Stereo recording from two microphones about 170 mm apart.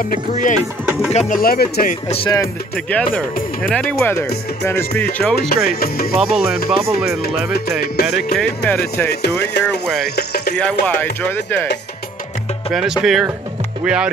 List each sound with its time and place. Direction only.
0.0 s speech: 50° left (ahead or behind)
2.0 s music: 35° left (ahead or behind)
2.7 s music: 5° left (ahead or behind)
5.1 s speech: 5° left (ahead or behind)
5.5 s speech: 65° left (ahead or behind)
7.5 s music: 70° left (ahead or behind)
8.6 s music: 10° left (ahead or behind)
9.1 s music: 75° left (ahead or behind)
9.7 s speech: 5° left (ahead or behind)
10.1 s music: 70° left (ahead or behind)
10.5 s music: 5° left (ahead or behind)
13.0 s speech: centre (ahead or behind)